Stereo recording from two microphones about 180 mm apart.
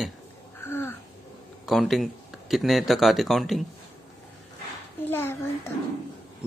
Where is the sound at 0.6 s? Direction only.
10° left (ahead or behind).